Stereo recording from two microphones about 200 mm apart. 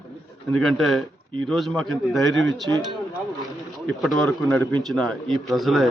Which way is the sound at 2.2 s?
65° right (ahead or behind).